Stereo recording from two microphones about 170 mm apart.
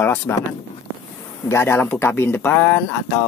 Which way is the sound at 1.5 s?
15° left (ahead or behind).